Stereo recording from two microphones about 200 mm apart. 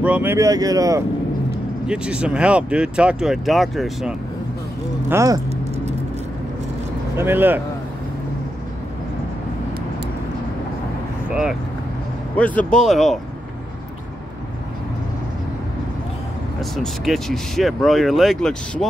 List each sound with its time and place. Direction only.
0.0 s speech: 10° right (ahead or behind)
1.9 s speech: 5° right (ahead or behind)
5.1 s speech: 15° right (ahead or behind)
7.2 s speech: 10° right (ahead or behind)
11.2 s speech: 5° right (ahead or behind)
12.4 s speech: 5° left (ahead or behind)
16.7 s speech: centre (ahead or behind)